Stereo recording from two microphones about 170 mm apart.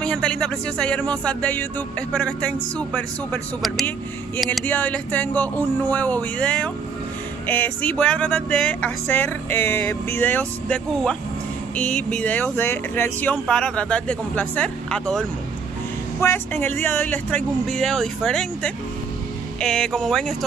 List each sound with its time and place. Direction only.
0.0 s music: 5° left (ahead or behind)
16.2 s music: 15° left (ahead or behind)
16.8 s speech: 10° left (ahead or behind)